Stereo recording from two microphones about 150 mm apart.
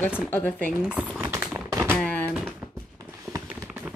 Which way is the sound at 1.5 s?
15° right (ahead or behind).